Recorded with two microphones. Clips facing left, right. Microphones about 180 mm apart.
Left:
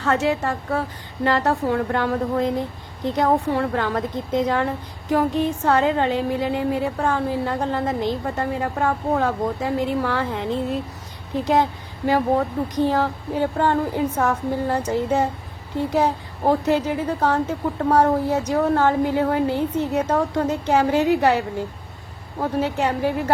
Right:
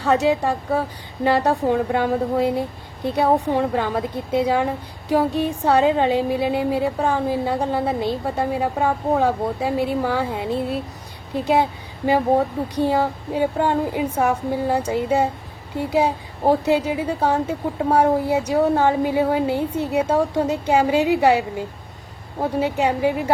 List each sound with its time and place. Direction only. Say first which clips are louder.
0.0 s a woman's voice: right 3 dB; 15° right (ahead or behind)